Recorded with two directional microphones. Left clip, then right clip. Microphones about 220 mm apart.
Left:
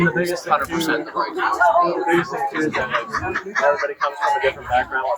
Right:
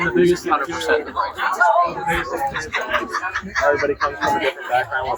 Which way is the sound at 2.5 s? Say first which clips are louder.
Left 1 dB; 50° right (ahead or behind).